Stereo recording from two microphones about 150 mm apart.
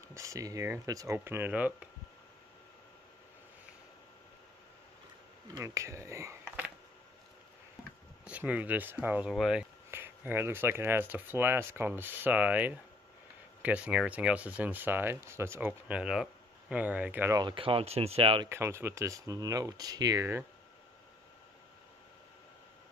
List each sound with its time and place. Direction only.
0.1 s speech: 20° right (ahead or behind)
5.6 s speech: 20° right (ahead or behind)
8.3 s speech: 10° right (ahead or behind)
9.8 s speech: 15° right (ahead or behind)
17.4 s speech: 35° right (ahead or behind)
18.5 s speech: 15° right (ahead or behind)